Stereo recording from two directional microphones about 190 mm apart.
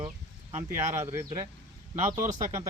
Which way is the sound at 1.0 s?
15° right (ahead or behind).